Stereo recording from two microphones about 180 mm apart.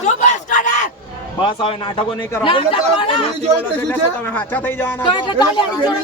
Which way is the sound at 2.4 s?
30° left (ahead or behind).